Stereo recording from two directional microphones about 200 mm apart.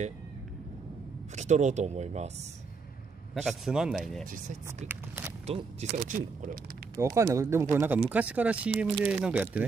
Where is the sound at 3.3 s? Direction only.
Centre (ahead or behind).